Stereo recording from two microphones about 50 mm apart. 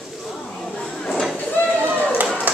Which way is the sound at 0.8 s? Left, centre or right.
Centre.